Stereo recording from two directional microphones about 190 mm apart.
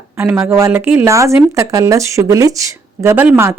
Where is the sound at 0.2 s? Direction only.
10° right (ahead or behind).